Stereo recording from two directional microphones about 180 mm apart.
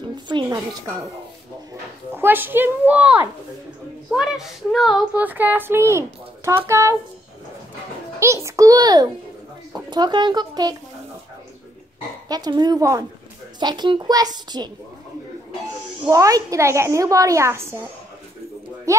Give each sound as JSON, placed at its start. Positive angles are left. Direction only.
{"t": 0.1, "sound": "music", "side_deg": -25}
{"t": 2.1, "sound": "speech", "side_deg": -10}
{"t": 8.2, "sound": "a child's voice", "side_deg": -15}
{"t": 12.3, "sound": "a child's voice", "side_deg": -25}
{"t": 16.1, "sound": "speech", "side_deg": -20}
{"t": 18.9, "sound": "a child's voice", "side_deg": -15}